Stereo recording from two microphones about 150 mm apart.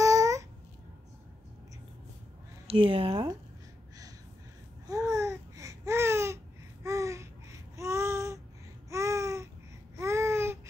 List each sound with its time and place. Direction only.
0.0 s babbling: 20° right (ahead or behind)
2.6 s speech: 40° right (ahead or behind)
4.8 s babbling: 20° right (ahead or behind)